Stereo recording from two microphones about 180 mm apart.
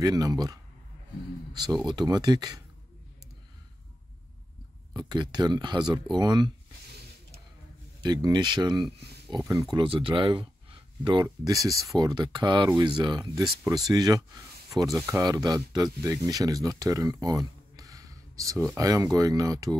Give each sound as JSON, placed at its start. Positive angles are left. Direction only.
{"t": 0.0, "sound": "speech", "side_deg": -20}
{"t": 4.9, "sound": "speech", "side_deg": -25}
{"t": 8.0, "sound": "speech", "side_deg": -20}